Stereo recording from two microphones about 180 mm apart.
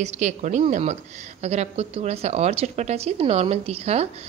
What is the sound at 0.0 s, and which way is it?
Speech, 40° right (ahead or behind).